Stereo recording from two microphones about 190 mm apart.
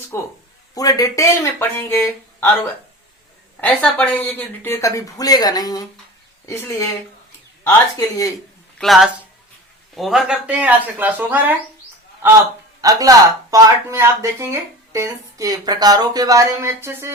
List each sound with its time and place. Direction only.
0.1 s speech: 15° left (ahead or behind)
3.6 s speech: 5° left (ahead or behind)
8.8 s speech: centre (ahead or behind)
12.8 s speech: 20° right (ahead or behind)